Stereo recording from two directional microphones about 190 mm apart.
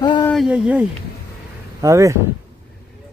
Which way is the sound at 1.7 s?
15° right (ahead or behind).